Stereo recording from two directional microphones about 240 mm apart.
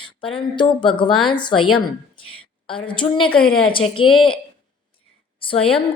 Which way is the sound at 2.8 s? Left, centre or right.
Left.